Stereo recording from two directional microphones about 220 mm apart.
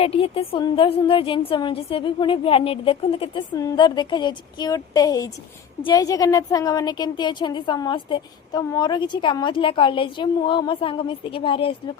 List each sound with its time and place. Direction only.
0.0 s a woman's voice: 25° left (ahead or behind)